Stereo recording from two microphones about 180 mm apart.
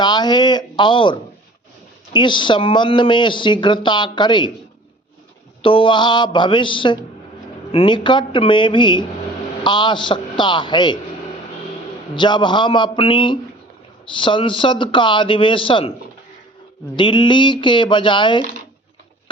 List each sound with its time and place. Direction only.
0.0 s speech: 25° left (ahead or behind)
5.6 s speech: 30° left (ahead or behind)
12.1 s speech: 25° left (ahead or behind)
16.9 s speech: 25° left (ahead or behind)